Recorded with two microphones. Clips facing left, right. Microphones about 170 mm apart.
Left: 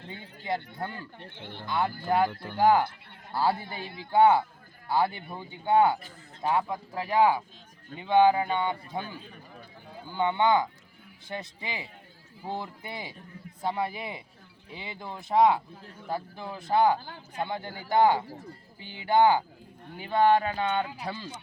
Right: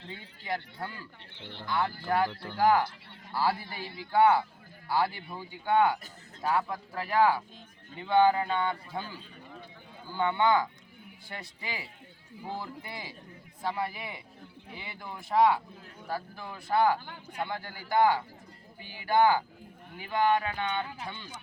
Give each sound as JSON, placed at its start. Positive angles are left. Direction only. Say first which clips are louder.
{"t": 0.1, "sound": "speech", "louder": "left 3 dB", "side_deg": 25}
{"t": 1.2, "sound": "speech", "louder": "left 4 dB", "side_deg": 50}
{"t": 1.6, "sound": "a man's voice", "louder": "left 2 dB", "side_deg": 20}
{"t": 10.1, "sound": "a man's voice", "louder": "left 2 dB", "side_deg": 20}
{"t": 18.9, "sound": "a sound", "louder": "left 2 dB", "side_deg": 25}
{"t": 20.0, "sound": "speech", "louder": "left 4 dB", "side_deg": 30}